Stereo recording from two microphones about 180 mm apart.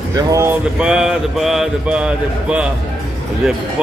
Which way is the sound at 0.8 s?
5° right (ahead or behind).